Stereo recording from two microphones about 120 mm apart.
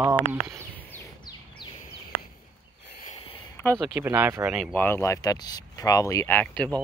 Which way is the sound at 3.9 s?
20° right (ahead or behind).